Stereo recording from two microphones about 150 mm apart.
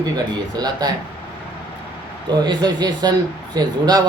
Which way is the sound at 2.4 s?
30° right (ahead or behind).